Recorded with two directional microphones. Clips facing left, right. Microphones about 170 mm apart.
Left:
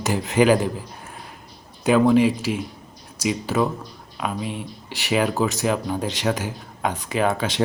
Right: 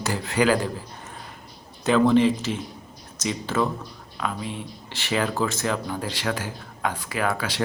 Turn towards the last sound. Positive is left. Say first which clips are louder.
# left 4 dB
turn(degrees=20)  # may be behind; listen again after turning